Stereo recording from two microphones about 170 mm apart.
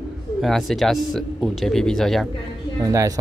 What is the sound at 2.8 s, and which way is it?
Speech, 20° right (ahead or behind).